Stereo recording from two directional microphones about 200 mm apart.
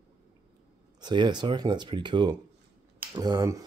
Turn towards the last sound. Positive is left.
turn(degrees=-20)  # may be behind; listen again after turning